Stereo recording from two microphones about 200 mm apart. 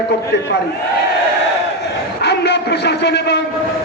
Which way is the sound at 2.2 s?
55° left (ahead or behind).